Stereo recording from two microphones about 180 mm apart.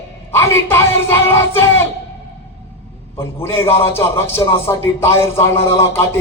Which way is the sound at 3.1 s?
15° left (ahead or behind).